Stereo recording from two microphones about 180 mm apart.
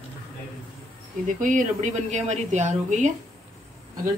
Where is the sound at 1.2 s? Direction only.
45° right (ahead or behind).